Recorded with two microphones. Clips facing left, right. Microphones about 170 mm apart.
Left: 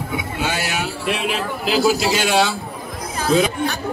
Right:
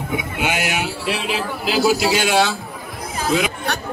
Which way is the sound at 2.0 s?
15° right (ahead or behind).